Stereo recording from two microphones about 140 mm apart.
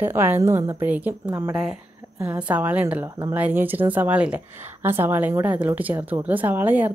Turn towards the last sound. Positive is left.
turn(degrees=-15)  # may be behind; listen again after turning